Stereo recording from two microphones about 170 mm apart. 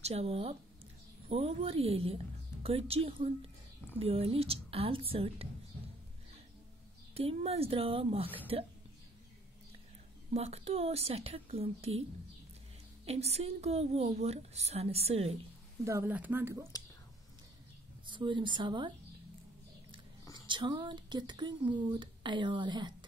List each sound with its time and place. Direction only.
0.0 s a woman's voice: 40° right (ahead or behind)
7.2 s a woman's voice: 35° right (ahead or behind)
10.3 s a woman's voice: 35° right (ahead or behind)
13.0 s a woman's voice: 35° right (ahead or behind)
15.8 s speech: 15° right (ahead or behind)
18.0 s speech: 30° right (ahead or behind)
20.4 s speech: 25° right (ahead or behind)